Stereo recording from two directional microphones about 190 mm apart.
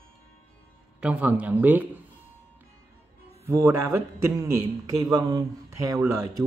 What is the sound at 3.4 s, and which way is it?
Speech, 15° right (ahead or behind).